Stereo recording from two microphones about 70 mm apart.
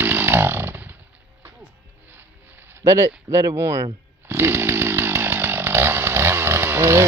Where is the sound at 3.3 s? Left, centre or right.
Right.